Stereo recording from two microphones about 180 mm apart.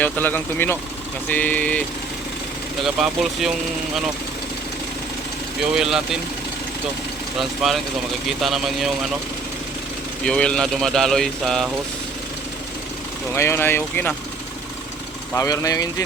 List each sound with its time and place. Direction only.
0.0 s speech: 10° left (ahead or behind)
2.8 s speech: centre (ahead or behind)
5.7 s speech: centre (ahead or behind)
7.3 s speech: centre (ahead or behind)
10.2 s speech: 5° left (ahead or behind)
13.3 s speech: 15° left (ahead or behind)
15.3 s speech: 15° left (ahead or behind)